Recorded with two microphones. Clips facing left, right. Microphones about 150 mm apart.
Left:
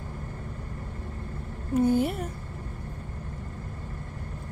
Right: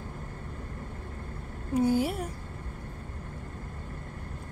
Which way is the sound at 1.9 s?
55° left (ahead or behind).